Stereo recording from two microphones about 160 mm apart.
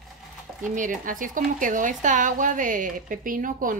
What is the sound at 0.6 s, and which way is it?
Speech, 55° right (ahead or behind).